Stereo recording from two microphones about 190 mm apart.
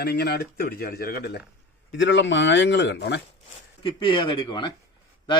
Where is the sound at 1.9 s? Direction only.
75° left (ahead or behind).